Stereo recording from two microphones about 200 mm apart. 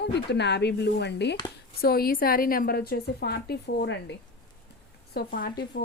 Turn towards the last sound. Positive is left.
turn(degrees=50)  # may be behind; listen again after turning